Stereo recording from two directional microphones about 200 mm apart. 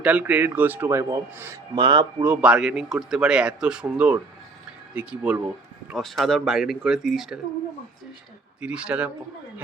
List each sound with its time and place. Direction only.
0.0 s a man's voice: 5° right (ahead or behind); by 2.2 s 25° right (ahead or behind)
2.2 s speech: 5° right (ahead or behind)
8.6 s speech: 5° right (ahead or behind)